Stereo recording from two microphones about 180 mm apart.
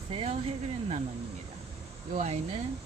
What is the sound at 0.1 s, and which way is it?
Speech, 35° right (ahead or behind).